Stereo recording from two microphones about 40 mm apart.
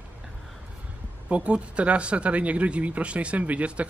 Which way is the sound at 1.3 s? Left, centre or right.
Right.